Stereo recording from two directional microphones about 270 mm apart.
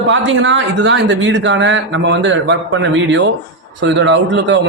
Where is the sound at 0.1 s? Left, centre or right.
Right.